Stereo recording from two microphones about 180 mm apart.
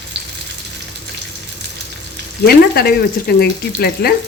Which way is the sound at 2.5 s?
60° left (ahead or behind).